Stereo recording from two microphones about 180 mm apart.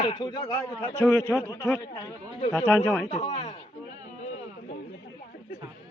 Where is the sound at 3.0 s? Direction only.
35° left (ahead or behind).